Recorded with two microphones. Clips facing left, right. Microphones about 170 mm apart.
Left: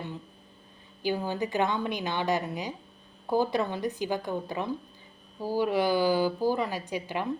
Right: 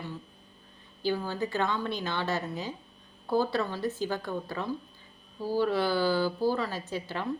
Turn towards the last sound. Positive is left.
turn(degrees=15)  # may be behind; listen again after turning